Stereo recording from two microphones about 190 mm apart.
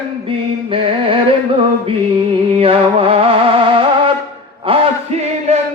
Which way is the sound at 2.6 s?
30° right (ahead or behind).